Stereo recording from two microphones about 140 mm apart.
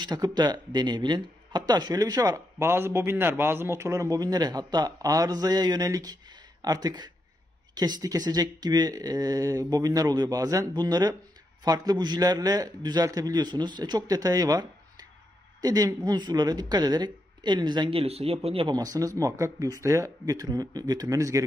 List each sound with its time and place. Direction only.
0.0 s speech: 30° right (ahead or behind)
18.8 s speech: 25° right (ahead or behind)